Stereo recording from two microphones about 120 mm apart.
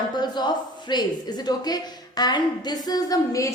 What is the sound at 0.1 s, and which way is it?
A woman's voice, 35° left (ahead or behind).